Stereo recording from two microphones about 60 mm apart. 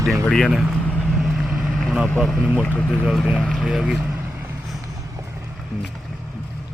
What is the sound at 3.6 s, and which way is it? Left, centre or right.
Speech, centre.